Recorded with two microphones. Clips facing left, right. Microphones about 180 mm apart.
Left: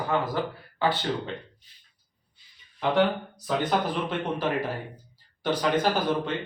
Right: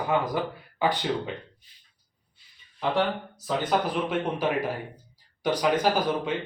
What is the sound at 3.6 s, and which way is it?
Speech, 10° right (ahead or behind).